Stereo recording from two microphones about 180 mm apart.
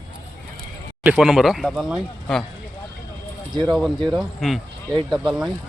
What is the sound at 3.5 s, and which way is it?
Speech, 25° right (ahead or behind).